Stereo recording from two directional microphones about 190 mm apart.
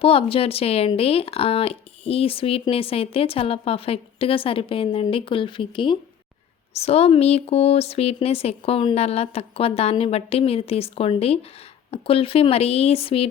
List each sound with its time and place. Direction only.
0.0 s a woman's voice: 30° left (ahead or behind)